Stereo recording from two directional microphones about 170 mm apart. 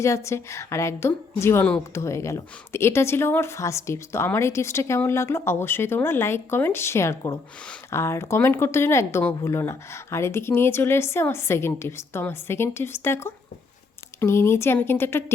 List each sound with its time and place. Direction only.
0.0 s speech: 15° left (ahead or behind)